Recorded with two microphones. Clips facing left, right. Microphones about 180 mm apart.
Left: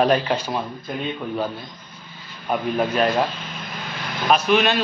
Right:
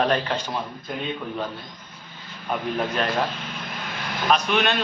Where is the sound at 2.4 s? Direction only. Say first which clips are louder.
Left 4 dB; 10° left (ahead or behind).